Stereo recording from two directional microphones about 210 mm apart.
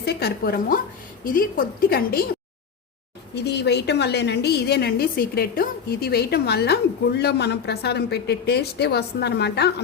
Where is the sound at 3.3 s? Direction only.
55° left (ahead or behind).